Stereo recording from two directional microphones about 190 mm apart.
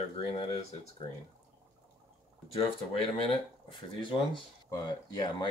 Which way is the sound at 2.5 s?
30° left (ahead or behind).